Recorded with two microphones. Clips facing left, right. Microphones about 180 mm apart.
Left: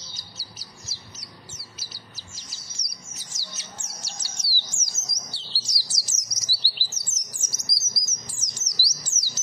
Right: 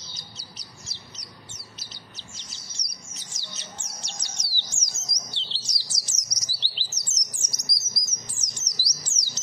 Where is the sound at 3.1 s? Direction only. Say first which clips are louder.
Even; 5° left (ahead or behind).